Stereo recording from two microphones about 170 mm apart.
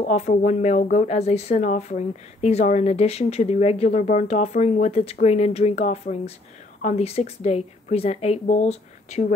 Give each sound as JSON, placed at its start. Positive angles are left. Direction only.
{"t": 0.0, "sound": "speech", "side_deg": 45}